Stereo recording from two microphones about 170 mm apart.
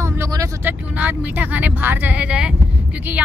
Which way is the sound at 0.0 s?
15° right (ahead or behind).